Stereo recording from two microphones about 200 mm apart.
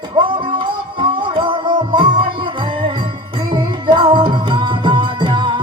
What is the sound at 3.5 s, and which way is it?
Music, 25° right (ahead or behind).